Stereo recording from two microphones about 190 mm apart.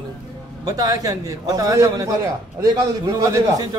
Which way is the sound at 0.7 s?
20° right (ahead or behind).